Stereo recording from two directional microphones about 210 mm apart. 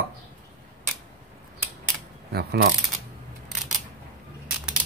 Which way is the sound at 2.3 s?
50° right (ahead or behind).